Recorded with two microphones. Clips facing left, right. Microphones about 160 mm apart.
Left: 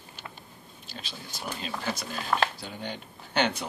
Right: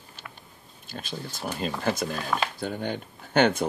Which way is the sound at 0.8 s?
50° right (ahead or behind).